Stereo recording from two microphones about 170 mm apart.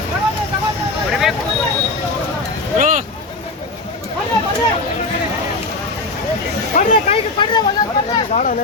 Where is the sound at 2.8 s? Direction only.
50° right (ahead or behind).